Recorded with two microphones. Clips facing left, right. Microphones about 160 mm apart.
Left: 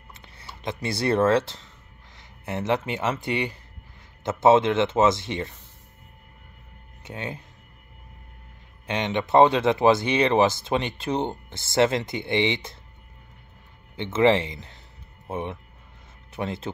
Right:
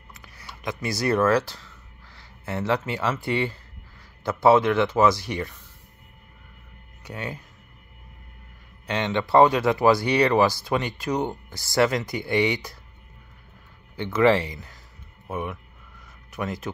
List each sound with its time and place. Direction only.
0.1 s speech: 30° left (ahead or behind)
7.0 s speech: 25° left (ahead or behind)
8.8 s speech: 20° left (ahead or behind)
13.9 s speech: 20° left (ahead or behind)